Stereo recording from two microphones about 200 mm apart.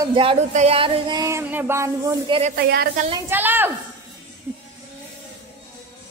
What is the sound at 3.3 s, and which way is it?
Speech, 10° right (ahead or behind).